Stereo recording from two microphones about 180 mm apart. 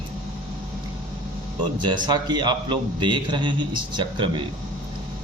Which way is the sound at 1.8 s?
25° right (ahead or behind).